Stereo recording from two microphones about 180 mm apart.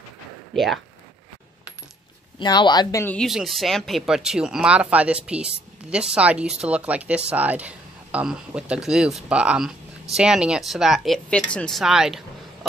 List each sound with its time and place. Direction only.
2.3 s speech: 25° left (ahead or behind)
3.2 s speech: centre (ahead or behind)